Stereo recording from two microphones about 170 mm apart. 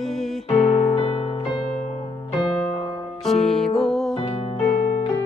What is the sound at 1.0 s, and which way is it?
Music, 30° left (ahead or behind).